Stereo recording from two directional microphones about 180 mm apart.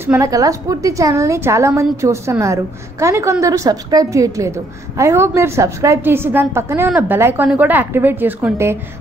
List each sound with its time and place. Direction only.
0.0 s a woman's voice: 15° right (ahead or behind)